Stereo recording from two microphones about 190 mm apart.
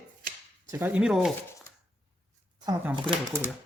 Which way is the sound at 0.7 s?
10° right (ahead or behind).